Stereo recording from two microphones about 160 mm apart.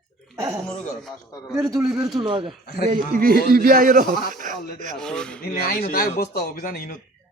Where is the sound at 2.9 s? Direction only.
60° right (ahead or behind).